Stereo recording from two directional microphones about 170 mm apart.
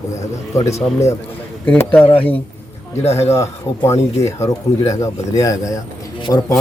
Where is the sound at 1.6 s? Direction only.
10° left (ahead or behind).